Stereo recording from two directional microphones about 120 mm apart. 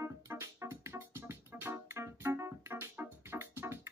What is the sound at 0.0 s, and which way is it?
Keyboard, 25° right (ahead or behind).